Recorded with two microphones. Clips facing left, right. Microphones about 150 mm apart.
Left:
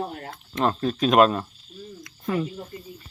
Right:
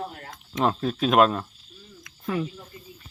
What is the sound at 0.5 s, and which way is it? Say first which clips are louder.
Speech: left 1 dB; 5° right (ahead or behind).